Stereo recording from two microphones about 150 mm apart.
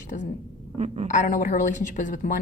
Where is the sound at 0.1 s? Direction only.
65° left (ahead or behind).